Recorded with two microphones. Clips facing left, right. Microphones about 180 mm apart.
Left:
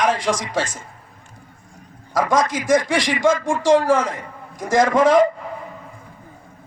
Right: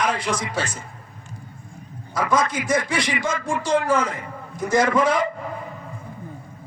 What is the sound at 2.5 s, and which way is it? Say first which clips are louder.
Speech: left 5 dB; 90° left.